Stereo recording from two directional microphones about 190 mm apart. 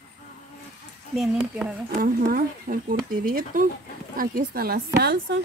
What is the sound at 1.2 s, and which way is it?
Speech, 5° right (ahead or behind).